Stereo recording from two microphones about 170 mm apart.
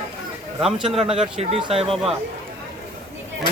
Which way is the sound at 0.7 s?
5° right (ahead or behind).